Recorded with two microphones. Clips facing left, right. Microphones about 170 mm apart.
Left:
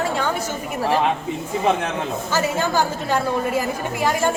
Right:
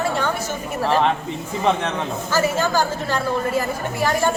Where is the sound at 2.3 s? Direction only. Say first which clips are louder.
Right 2 dB; 15° left (ahead or behind).